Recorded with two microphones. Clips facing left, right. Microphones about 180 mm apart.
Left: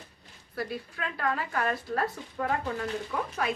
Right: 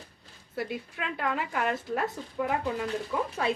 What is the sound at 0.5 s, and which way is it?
Speech, 20° right (ahead or behind).